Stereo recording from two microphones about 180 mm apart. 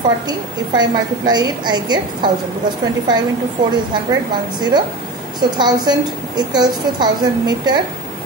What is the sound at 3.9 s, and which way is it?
A woman's voice, 25° right (ahead or behind).